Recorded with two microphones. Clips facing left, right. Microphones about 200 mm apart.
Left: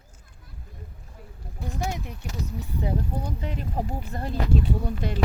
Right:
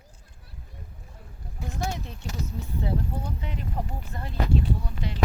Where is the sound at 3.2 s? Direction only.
40° left (ahead or behind).